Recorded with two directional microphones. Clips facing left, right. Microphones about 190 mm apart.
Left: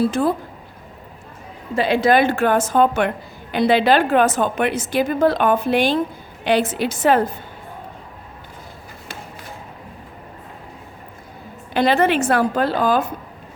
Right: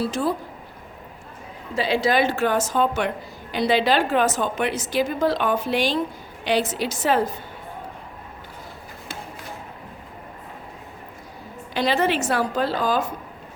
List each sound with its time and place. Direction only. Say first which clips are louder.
0.1 s a woman's voice: left 4 dB; 55° left (ahead or behind)
1.7 s a woman's voice: left 5 dB; 55° left (ahead or behind)
11.7 s a woman's voice: left 5 dB; 55° left (ahead or behind)